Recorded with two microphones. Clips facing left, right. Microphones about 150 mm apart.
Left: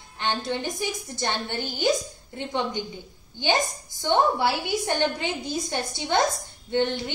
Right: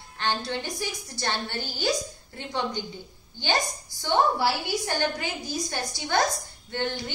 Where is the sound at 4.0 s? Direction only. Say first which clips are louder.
Left 2 dB; 20° left (ahead or behind).